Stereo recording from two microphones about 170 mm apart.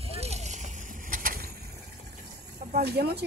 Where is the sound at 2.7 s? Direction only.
70° right (ahead or behind).